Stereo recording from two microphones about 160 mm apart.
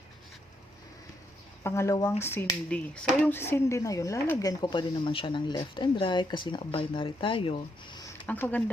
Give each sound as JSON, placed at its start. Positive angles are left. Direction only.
{"t": 1.6, "sound": "speech", "side_deg": 15}
{"t": 8.3, "sound": "speech", "side_deg": 10}